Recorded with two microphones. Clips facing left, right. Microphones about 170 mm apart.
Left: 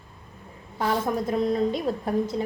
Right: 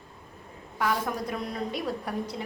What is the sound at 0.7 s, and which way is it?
A woman's voice, 30° left (ahead or behind).